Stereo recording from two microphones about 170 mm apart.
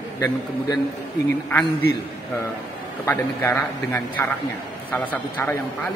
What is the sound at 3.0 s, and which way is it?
A man's voice, 15° left (ahead or behind).